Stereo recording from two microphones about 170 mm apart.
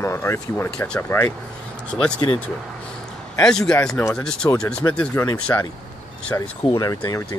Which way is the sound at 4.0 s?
15° left (ahead or behind).